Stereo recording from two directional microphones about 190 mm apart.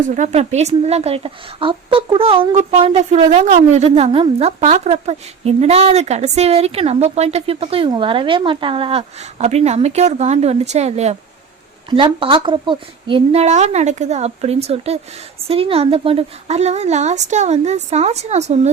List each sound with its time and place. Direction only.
0.1 s a woman's voice: 40° right (ahead or behind)